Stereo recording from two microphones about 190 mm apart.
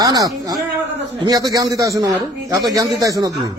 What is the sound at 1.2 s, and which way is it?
A man's voice, 20° right (ahead or behind).